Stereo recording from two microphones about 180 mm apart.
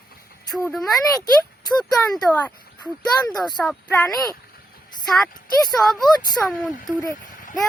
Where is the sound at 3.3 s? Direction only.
25° left (ahead or behind).